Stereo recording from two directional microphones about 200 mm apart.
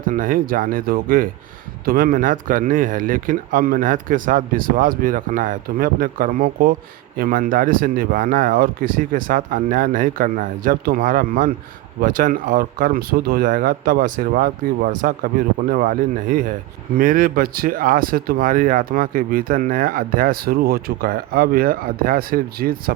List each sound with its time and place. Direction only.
0.0 s speech: 45° right (ahead or behind)